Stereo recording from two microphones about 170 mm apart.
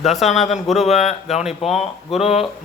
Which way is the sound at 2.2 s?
35° left (ahead or behind).